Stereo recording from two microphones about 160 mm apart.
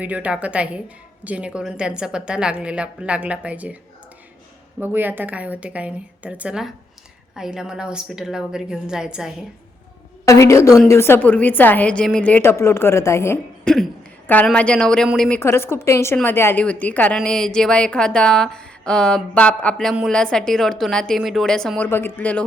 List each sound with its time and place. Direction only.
0.0 s a woman's voice: 10° right (ahead or behind)
4.8 s a woman's voice: 10° right (ahead or behind)
10.2 s a woman's voice: 20° left (ahead or behind)
13.7 s a woman's voice: 5° left (ahead or behind)
15.4 s a woman's voice: 15° left (ahead or behind)